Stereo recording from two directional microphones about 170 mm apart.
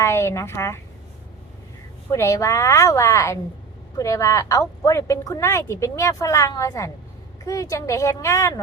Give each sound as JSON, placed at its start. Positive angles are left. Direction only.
{"t": 0.0, "sound": "a woman's voice", "side_deg": 15}
{"t": 2.1, "sound": "a woman's voice", "side_deg": 20}